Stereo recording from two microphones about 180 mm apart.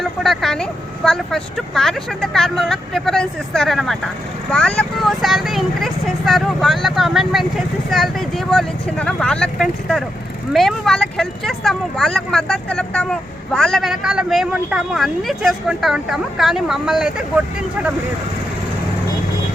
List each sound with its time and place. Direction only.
0.0 s speech: centre (ahead or behind)